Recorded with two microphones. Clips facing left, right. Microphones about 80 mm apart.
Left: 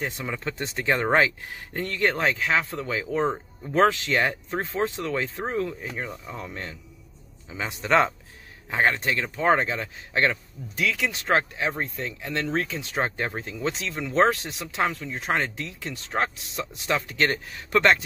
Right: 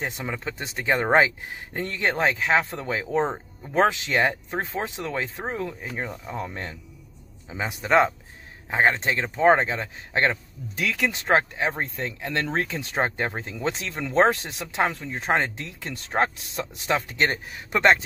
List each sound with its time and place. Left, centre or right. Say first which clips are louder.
0.3 s speech: left 1 dB; centre; by 12.3 s right
12.5 s speech: right 1 dB; right
12.9 s speech: right 2 dB; right